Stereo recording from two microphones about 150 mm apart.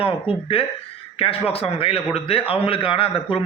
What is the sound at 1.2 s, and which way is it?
A man's voice, 40° left (ahead or behind).